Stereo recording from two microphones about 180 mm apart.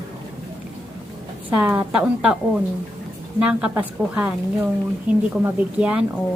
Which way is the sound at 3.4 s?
5° right (ahead or behind).